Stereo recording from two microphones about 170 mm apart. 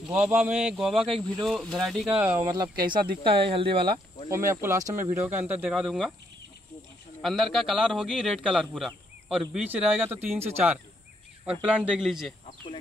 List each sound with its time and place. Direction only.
0.0 s a man's voice: 5° right (ahead or behind)
2.0 s speech: 10° right (ahead or behind)
3.3 s speech: 30° right (ahead or behind)
4.3 s speech: 15° right (ahead or behind); by 6.1 s centre (ahead or behind)
7.2 s a man's voice: centre (ahead or behind)